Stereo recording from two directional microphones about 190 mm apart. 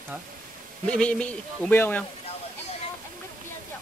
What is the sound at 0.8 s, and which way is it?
Speech, 5° left (ahead or behind).